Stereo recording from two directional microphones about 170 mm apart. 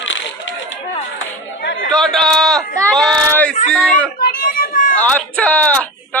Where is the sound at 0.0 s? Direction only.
90° left.